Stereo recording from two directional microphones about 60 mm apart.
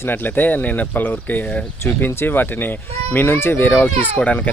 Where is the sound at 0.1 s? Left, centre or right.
Left.